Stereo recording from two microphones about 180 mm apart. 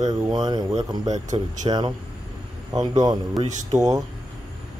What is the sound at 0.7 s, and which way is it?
Speech, 40° right (ahead or behind).